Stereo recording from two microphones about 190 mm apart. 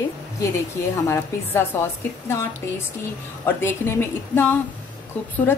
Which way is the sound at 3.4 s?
10° left (ahead or behind).